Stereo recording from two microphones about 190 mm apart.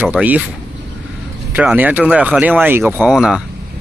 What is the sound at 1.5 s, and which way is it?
Speech, 10° right (ahead or behind).